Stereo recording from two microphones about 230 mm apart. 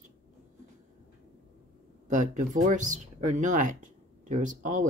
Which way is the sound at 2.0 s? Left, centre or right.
Right.